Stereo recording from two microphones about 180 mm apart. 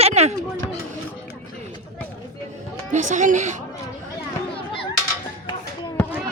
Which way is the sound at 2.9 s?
45° right (ahead or behind).